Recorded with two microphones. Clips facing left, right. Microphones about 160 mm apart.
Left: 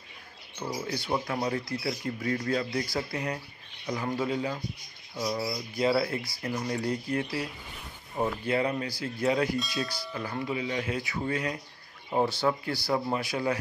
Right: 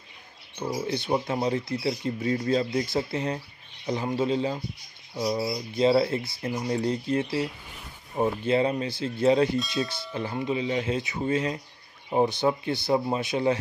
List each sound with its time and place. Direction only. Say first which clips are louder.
0.8 s speech: right 4 dB; 20° right (ahead or behind)